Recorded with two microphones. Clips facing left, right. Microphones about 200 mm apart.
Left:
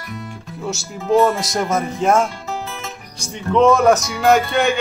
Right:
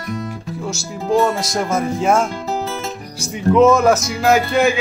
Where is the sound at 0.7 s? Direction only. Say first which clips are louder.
Left 1 dB; centre (ahead or behind).